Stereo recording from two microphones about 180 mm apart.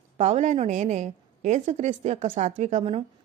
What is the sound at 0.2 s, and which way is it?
A woman's voice, 40° right (ahead or behind).